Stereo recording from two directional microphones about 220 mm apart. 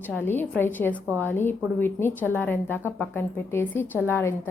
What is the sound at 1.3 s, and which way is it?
A woman's voice, 10° left (ahead or behind).